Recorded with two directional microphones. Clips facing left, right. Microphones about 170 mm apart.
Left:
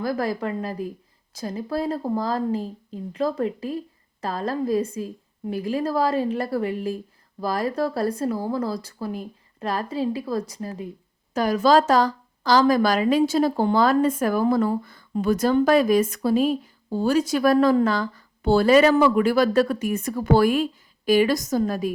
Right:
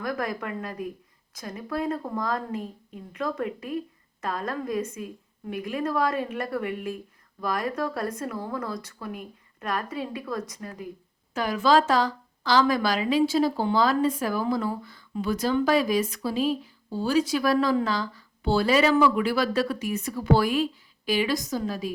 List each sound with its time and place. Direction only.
0.0 s a woman's voice: 30° left (ahead or behind); by 21.9 s 50° left (ahead or behind)